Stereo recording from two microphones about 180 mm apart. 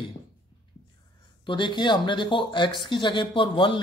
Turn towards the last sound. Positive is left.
turn(degrees=30)  # may be behind; listen again after turning